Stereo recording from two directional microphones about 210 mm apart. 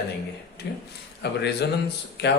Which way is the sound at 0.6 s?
50° left (ahead or behind).